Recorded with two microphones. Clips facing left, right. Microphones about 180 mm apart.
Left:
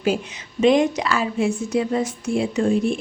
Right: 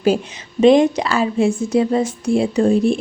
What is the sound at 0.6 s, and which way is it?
A woman's voice, 30° right (ahead or behind).